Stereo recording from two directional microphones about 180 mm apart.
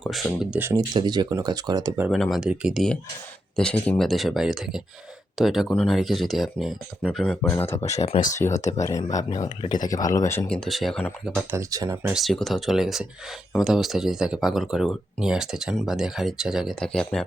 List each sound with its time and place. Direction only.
0.0 s speech: centre (ahead or behind)
0.6 s speech: 20° right (ahead or behind)
2.0 s speech: centre (ahead or behind)
7.4 s speech: 15° left (ahead or behind)
7.9 s speech: 35° left (ahead or behind)
8.6 s speech: 20° left (ahead or behind); by 11.0 s centre (ahead or behind)
11.5 s speech: 15° right (ahead or behind)
12.1 s speech: centre (ahead or behind)